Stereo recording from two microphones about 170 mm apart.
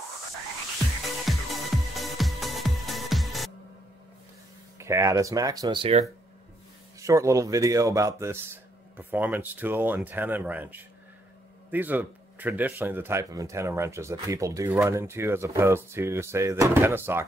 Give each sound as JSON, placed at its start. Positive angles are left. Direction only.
{"t": 1.2, "sound": "music", "side_deg": 0}
{"t": 4.7, "sound": "speech", "side_deg": -15}
{"t": 7.0, "sound": "speech", "side_deg": -20}